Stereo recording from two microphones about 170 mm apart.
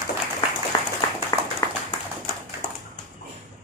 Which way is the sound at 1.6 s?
20° left (ahead or behind).